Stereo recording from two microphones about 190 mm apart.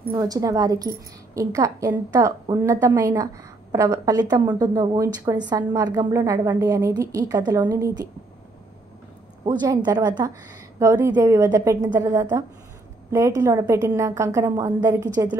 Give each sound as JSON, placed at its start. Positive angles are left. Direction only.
{"t": 0.1, "sound": "a woman's voice", "side_deg": -20}
{"t": 9.5, "sound": "a woman's voice", "side_deg": -25}